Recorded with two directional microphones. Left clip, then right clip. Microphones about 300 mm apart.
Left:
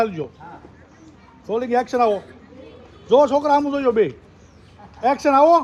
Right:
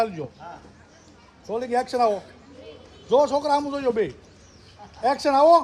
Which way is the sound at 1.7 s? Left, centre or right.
Left.